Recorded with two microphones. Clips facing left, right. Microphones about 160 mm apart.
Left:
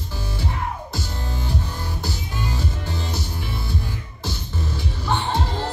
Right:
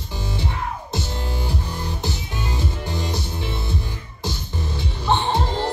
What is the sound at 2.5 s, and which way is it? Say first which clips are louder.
Music: right 1 dB; 15° right (ahead or behind).